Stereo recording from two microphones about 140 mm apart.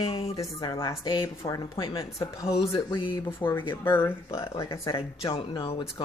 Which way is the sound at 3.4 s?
15° left (ahead or behind).